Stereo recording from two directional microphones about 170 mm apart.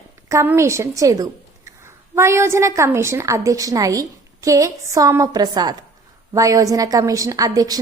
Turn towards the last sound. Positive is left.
turn(degrees=-20)  # may be behind; listen again after turning